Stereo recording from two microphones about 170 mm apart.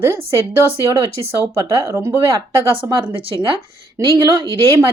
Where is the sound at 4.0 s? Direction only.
20° right (ahead or behind).